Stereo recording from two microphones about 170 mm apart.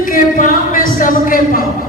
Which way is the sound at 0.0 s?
50° left (ahead or behind).